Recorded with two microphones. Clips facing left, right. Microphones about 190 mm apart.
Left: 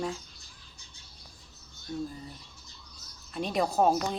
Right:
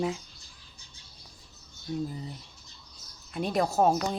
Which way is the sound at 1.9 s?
15° right (ahead or behind).